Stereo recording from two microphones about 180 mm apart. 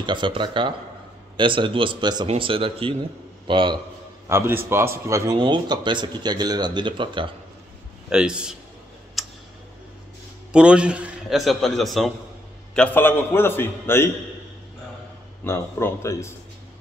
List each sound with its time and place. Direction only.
0.0 s a man's voice: 25° right (ahead or behind)
4.3 s a man's voice: 15° right (ahead or behind)
8.1 s a man's voice: 5° right (ahead or behind)
9.2 s tick: centre (ahead or behind)
10.5 s a man's voice: 5° right (ahead or behind); by 14.1 s 15° left (ahead or behind)
15.4 s a man's voice: 15° left (ahead or behind)